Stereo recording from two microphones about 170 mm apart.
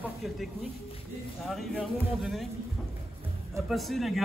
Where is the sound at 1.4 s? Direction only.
Centre (ahead or behind).